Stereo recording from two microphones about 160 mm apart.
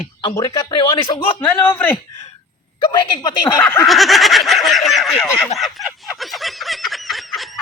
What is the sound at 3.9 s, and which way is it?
Fowl, centre (ahead or behind).